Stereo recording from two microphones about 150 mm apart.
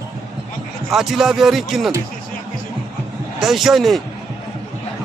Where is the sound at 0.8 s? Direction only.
Centre (ahead or behind).